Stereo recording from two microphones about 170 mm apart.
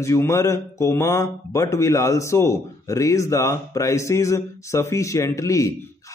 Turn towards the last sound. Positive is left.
turn(degrees=20)  # may be behind; listen again after turning